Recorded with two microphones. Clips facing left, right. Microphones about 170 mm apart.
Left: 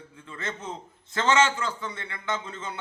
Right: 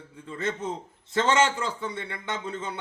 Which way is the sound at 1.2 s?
15° right (ahead or behind).